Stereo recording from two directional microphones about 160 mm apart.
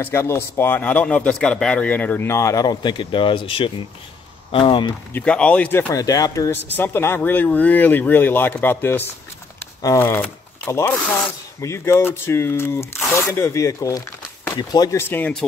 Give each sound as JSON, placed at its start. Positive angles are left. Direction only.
{"t": 0.0, "sound": "speech", "side_deg": 15}
{"t": 5.1, "sound": "speech", "side_deg": 5}